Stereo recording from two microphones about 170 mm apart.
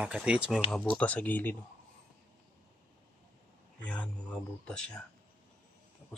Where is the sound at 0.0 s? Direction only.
5° right (ahead or behind).